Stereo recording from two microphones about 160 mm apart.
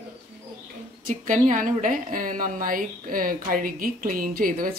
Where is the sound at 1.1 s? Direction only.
55° right (ahead or behind).